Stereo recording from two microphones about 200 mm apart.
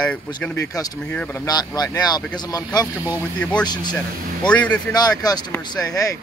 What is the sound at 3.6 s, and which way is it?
Speech, 20° left (ahead or behind).